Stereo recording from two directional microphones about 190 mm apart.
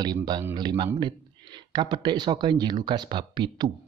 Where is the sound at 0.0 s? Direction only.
20° right (ahead or behind).